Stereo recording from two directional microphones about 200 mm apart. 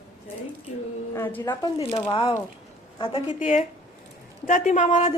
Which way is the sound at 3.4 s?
40° left (ahead or behind).